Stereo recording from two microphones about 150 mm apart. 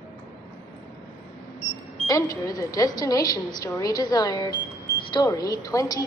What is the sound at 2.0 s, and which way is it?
Speech, 25° left (ahead or behind).